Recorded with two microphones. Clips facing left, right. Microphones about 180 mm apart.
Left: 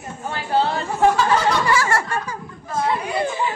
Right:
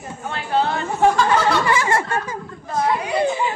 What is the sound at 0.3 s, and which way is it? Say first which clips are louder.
Speech: even; 30° left (ahead or behind).